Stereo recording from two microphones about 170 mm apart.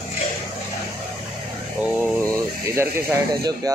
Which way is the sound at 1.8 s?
10° right (ahead or behind).